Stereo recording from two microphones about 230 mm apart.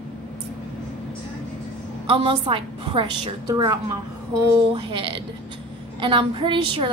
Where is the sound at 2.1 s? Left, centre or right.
Right.